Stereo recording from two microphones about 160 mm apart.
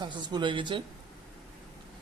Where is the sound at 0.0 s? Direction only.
30° right (ahead or behind).